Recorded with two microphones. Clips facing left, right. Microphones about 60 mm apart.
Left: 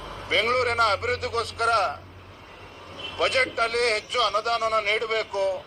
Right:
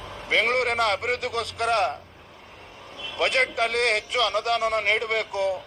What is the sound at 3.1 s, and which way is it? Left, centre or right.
A man's voice, right.